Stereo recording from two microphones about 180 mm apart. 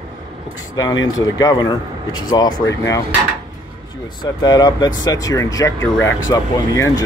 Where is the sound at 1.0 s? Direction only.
20° left (ahead or behind).